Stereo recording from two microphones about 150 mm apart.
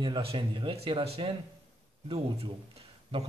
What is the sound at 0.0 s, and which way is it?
Speech, 35° right (ahead or behind).